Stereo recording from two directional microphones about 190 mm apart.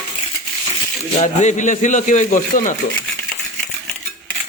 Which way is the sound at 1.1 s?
35° left (ahead or behind).